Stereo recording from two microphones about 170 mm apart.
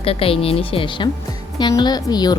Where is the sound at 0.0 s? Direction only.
35° left (ahead or behind).